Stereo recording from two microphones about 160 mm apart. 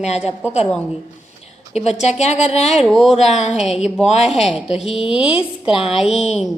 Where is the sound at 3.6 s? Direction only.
40° left (ahead or behind).